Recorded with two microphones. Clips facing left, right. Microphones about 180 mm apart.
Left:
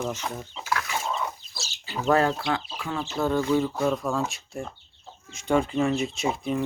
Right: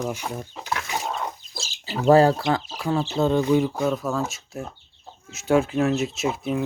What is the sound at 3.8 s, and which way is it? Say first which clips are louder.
Speech: right 1 dB; centre (ahead or behind).